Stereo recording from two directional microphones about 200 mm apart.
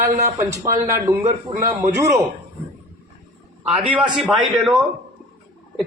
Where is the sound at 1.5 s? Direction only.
15° right (ahead or behind).